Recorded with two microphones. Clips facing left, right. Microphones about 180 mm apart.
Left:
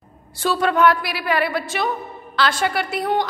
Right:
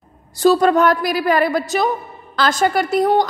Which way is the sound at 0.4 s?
40° right (ahead or behind).